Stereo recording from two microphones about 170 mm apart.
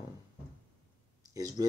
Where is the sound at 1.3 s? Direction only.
20° right (ahead or behind).